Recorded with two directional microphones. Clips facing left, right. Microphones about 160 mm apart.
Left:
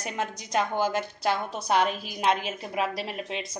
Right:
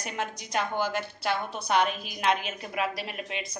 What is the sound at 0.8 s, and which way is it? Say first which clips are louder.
A woman's voice: left 3 dB; 35° left (ahead or behind).